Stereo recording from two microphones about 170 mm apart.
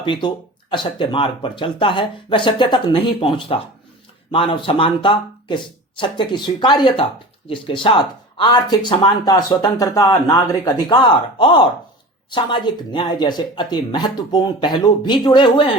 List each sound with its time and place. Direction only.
0.0 s speech: 30° left (ahead or behind)